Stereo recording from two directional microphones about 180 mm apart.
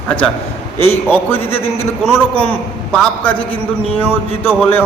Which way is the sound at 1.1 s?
10° left (ahead or behind).